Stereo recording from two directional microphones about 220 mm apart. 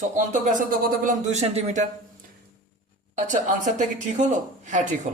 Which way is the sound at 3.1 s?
35° right (ahead or behind).